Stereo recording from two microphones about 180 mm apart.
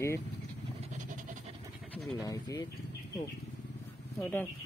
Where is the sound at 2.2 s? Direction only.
20° left (ahead or behind).